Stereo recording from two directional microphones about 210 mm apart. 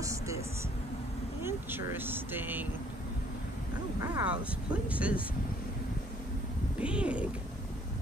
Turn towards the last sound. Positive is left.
turn(degrees=-5)  # may be behind; listen again after turning